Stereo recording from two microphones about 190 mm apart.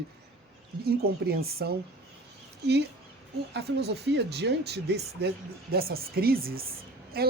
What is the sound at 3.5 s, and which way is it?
A woman's voice, 60° right (ahead or behind).